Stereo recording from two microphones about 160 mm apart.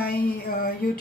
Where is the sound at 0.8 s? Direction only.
65° left (ahead or behind).